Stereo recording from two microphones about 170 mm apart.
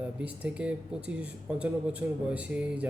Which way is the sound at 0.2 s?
5° right (ahead or behind).